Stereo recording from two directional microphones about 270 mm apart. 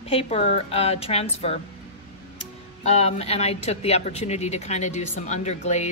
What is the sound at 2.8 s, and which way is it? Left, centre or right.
A woman's voice, left.